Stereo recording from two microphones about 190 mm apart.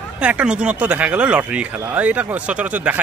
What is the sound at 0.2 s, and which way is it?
Speech, 5° right (ahead or behind).